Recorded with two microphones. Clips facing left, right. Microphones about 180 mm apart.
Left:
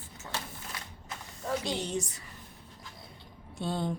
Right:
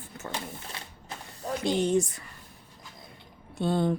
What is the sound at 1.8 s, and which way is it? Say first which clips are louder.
Speech: right 9 dB; 55° right (ahead or behind).